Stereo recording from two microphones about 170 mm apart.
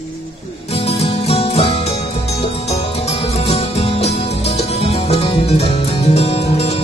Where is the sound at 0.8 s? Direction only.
40° left (ahead or behind).